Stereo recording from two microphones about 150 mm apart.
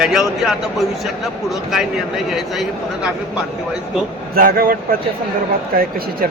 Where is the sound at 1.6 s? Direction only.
Centre (ahead or behind).